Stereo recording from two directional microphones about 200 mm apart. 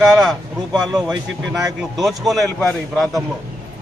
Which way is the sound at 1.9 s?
Centre (ahead or behind).